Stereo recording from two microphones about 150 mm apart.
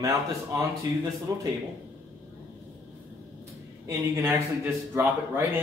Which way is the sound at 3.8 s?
20° right (ahead or behind).